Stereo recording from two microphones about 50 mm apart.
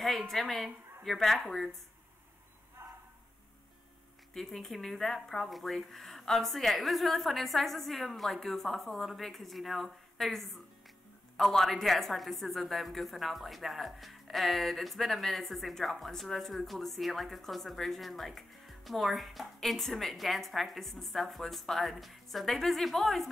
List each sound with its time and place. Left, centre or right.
0.3 s a woman's voice: centre
2.8 s a sound: right
4.3 s a woman's voice: centre